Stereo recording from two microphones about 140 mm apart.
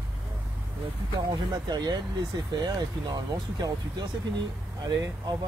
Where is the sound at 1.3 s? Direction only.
30° right (ahead or behind).